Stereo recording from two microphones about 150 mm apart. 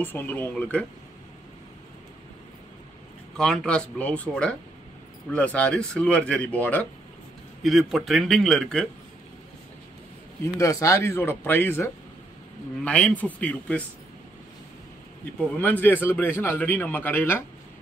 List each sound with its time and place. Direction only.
0.0 s a man's voice: 15° left (ahead or behind)
3.3 s a man's voice: 5° left (ahead or behind)
7.6 s a man's voice: centre (ahead or behind)
10.4 s a man's voice: 20° left (ahead or behind)
15.6 s a man's voice: 10° left (ahead or behind)